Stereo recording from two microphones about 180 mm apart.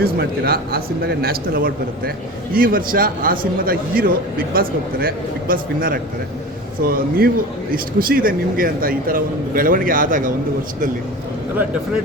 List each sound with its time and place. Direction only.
0.0 s a man's voice: 60° right (ahead or behind)